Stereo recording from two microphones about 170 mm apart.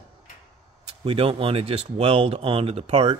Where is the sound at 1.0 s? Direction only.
35° right (ahead or behind).